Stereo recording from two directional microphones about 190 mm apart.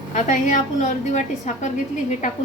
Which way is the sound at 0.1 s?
40° left (ahead or behind).